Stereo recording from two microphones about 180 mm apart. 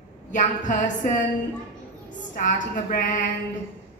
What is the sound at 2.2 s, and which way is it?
A woman's voice, 45° left (ahead or behind).